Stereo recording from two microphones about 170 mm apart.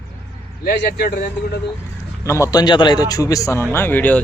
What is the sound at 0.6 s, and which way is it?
Speech, 75° left (ahead or behind).